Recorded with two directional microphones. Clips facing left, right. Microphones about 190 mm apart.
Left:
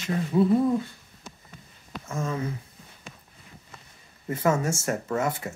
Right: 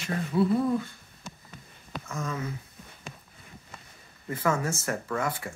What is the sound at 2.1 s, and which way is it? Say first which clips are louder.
Speech: left 4 dB; 25° left (ahead or behind).